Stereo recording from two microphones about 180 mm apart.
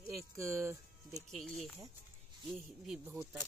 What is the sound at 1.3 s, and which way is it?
Speech, centre (ahead or behind).